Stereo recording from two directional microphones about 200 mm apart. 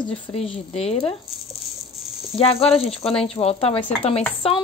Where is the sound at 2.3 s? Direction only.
30° left (ahead or behind).